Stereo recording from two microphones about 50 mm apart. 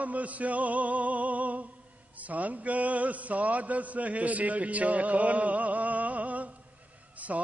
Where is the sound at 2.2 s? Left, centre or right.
Right.